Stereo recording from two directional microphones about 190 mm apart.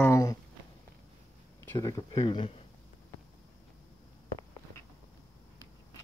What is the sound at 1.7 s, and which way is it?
Speech, 20° left (ahead or behind).